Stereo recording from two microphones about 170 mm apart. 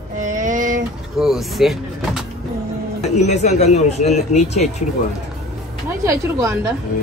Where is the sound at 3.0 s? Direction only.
40° left (ahead or behind).